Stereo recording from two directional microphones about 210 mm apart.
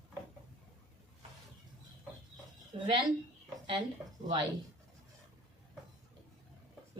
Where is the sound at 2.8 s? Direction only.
20° right (ahead or behind).